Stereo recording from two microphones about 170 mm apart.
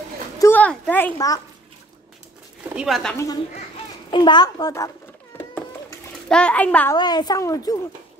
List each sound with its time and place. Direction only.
0.4 s a sound: 10° left (ahead or behind)
1.1 s a child's voice: 20° left (ahead or behind)
2.6 s speech: 5° right (ahead or behind)
4.1 s a child's voice: 25° left (ahead or behind)
5.5 s a sound: 10° left (ahead or behind)
7.0 s a child's voice: 25° left (ahead or behind)